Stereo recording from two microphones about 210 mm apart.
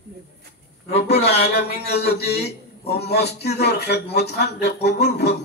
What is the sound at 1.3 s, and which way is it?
A man's voice, 50° left (ahead or behind).